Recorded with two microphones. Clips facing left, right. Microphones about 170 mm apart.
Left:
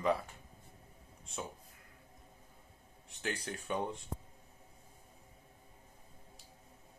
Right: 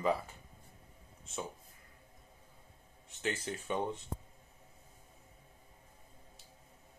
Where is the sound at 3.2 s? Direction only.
Centre (ahead or behind).